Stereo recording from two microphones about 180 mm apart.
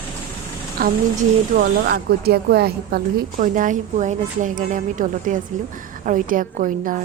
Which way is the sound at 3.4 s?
45° right (ahead or behind).